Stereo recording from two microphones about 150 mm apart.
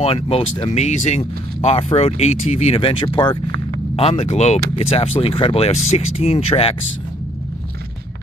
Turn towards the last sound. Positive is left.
turn(degrees=40)  # may be behind; listen again after turning